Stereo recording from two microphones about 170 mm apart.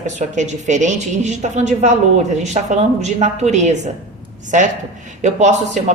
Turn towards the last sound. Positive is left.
turn(degrees=-45)  # may be behind; listen again after turning